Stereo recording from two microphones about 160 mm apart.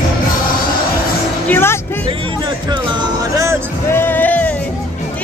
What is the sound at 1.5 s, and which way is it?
Speech, 15° left (ahead or behind).